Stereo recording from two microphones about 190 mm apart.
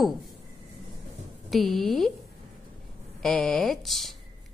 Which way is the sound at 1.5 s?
Centre (ahead or behind).